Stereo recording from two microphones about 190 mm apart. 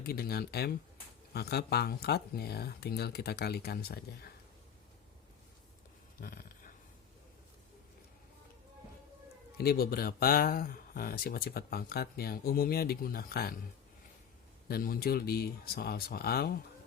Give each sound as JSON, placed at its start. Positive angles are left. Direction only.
{"t": 0.0, "sound": "speech", "side_deg": 55}
{"t": 6.1, "sound": "dog", "side_deg": 50}
{"t": 9.6, "sound": "speech", "side_deg": 55}
{"t": 14.7, "sound": "speech", "side_deg": 55}